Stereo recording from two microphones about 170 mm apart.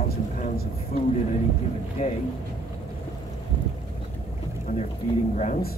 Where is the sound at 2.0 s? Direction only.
40° left (ahead or behind).